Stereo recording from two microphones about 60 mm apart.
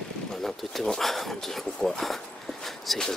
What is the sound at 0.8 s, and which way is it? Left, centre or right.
Speech, centre.